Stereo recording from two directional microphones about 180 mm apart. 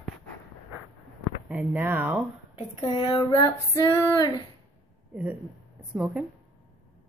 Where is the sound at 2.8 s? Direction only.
25° left (ahead or behind).